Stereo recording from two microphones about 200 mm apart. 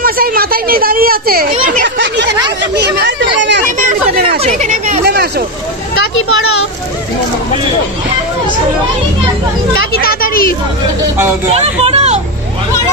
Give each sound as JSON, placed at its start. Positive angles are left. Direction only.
{"t": 0.0, "sound": "a woman's voice", "side_deg": -45}
{"t": 1.8, "sound": "speech", "side_deg": -60}
{"t": 3.6, "sound": "speech", "side_deg": -40}
{"t": 5.0, "sound": "hubbub", "side_deg": -55}
{"t": 9.9, "sound": "speech", "side_deg": 50}
{"t": 11.5, "sound": "speech", "side_deg": -30}